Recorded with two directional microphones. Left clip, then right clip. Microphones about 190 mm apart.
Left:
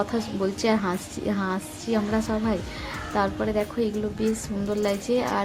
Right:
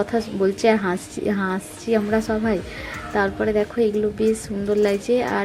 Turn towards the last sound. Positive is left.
turn(degrees=-15)  # may be behind; listen again after turning